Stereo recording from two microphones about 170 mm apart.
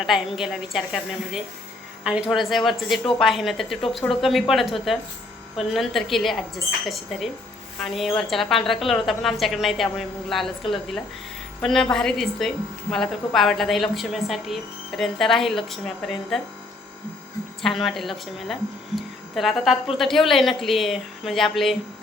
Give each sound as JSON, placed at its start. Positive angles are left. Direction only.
{"t": 0.0, "sound": "a woman's voice", "side_deg": 0}
{"t": 2.0, "sound": "a woman's voice", "side_deg": -5}
{"t": 17.6, "sound": "a woman's voice", "side_deg": 0}